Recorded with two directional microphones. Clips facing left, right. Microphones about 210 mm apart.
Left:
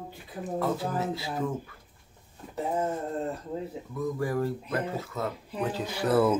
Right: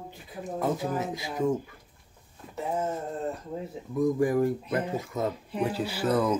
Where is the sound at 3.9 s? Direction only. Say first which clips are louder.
Right 6 dB; 15° right (ahead or behind).